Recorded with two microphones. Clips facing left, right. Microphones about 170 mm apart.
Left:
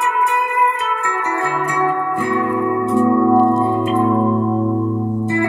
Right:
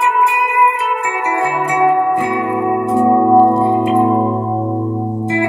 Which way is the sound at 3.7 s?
15° right (ahead or behind).